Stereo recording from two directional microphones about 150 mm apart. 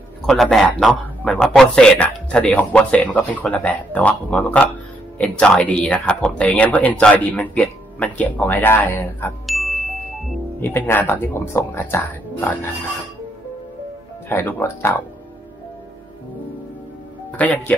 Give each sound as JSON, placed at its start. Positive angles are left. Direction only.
{"t": 0.3, "sound": "speech", "side_deg": 0}
{"t": 9.5, "sound": "music", "side_deg": 0}
{"t": 10.6, "sound": "speech", "side_deg": 15}
{"t": 14.3, "sound": "speech", "side_deg": 15}
{"t": 17.4, "sound": "speech", "side_deg": 10}